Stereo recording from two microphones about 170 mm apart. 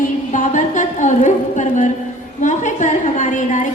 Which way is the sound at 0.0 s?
50° left (ahead or behind).